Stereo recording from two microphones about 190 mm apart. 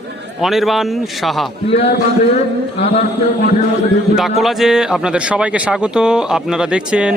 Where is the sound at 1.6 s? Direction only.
30° left (ahead or behind).